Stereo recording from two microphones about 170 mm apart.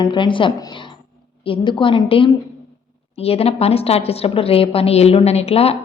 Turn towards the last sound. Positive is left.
turn(degrees=35)  # may be behind; listen again after turning